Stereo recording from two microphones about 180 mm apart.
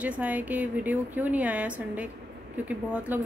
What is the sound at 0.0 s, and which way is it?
Speech, 10° right (ahead or behind).